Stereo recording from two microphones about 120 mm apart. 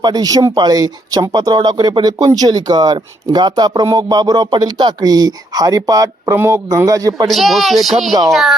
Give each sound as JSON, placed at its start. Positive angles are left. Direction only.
{"t": 0.0, "sound": "speech", "side_deg": -35}
{"t": 7.3, "sound": "speech", "side_deg": 0}